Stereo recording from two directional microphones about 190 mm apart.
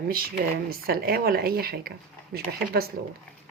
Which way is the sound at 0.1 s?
50° right (ahead or behind).